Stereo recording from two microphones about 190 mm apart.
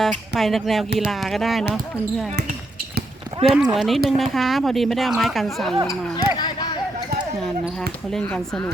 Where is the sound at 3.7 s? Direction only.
Centre (ahead or behind).